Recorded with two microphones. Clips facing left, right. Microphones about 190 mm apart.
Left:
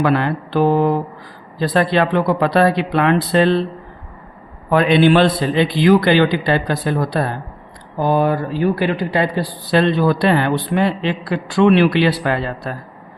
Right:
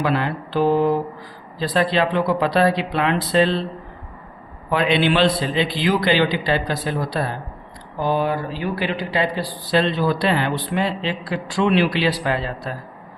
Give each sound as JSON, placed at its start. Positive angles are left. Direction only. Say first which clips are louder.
{"t": 0.0, "sound": "speech", "louder": "left 5 dB", "side_deg": 60}
{"t": 4.7, "sound": "speech", "louder": "left 6 dB", "side_deg": 50}